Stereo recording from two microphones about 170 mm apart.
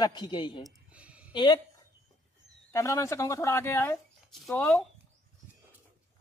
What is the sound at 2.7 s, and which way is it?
Speech, 20° left (ahead or behind).